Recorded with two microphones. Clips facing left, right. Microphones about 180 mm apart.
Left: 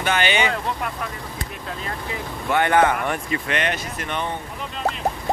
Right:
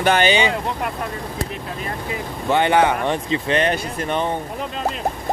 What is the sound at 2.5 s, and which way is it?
Speech, 20° right (ahead or behind).